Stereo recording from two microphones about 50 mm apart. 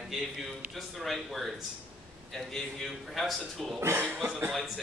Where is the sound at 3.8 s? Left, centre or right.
Right.